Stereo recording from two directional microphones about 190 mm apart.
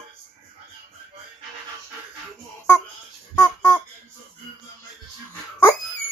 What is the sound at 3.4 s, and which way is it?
Music, 15° left (ahead or behind).